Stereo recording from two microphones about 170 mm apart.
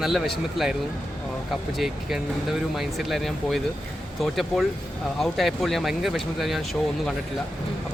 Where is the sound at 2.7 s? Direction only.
Centre (ahead or behind).